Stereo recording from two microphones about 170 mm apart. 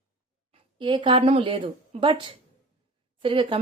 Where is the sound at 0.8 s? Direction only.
30° right (ahead or behind).